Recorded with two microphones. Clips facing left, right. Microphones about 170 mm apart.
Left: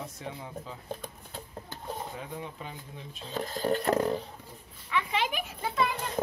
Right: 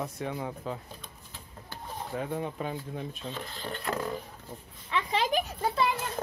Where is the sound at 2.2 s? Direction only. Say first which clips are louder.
Right 7 dB; 55° right (ahead or behind).